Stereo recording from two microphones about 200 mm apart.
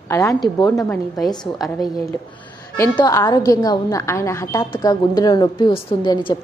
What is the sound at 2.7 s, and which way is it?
A woman's voice, 15° left (ahead or behind).